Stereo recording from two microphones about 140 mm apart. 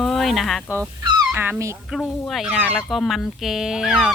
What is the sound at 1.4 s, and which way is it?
Speech, 20° right (ahead or behind).